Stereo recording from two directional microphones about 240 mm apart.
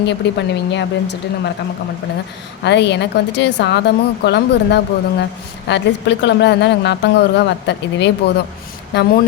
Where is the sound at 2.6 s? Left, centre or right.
Left.